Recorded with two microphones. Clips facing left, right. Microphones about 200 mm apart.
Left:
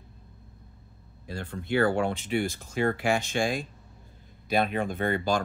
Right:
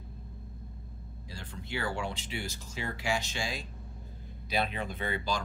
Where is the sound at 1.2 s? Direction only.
55° left (ahead or behind).